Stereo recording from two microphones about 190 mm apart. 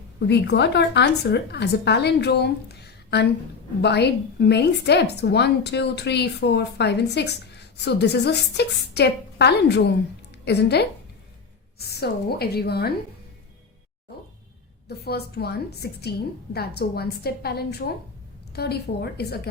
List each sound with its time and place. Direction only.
0.2 s a woman's voice: 65° left (ahead or behind)
14.8 s a woman's voice: 55° left (ahead or behind)